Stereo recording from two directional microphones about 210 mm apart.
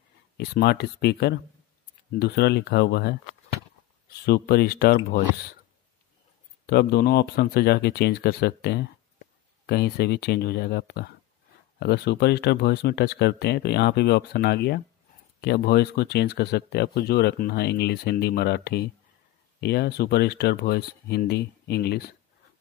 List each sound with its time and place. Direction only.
0.4 s speech: 50° left (ahead or behind)
4.3 s speech: 45° left (ahead or behind)
6.6 s speech: 50° left (ahead or behind)